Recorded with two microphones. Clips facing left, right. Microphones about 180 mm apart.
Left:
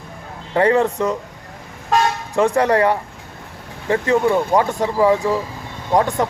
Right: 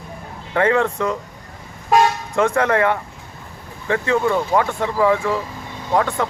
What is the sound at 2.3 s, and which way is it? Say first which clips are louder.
A man's voice: left 4 dB; 35° left (ahead or behind).